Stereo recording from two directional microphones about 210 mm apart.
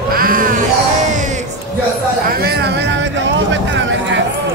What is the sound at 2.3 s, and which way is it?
Music, 45° right (ahead or behind).